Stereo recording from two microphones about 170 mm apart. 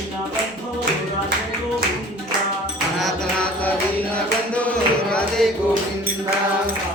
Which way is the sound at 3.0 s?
5° left (ahead or behind).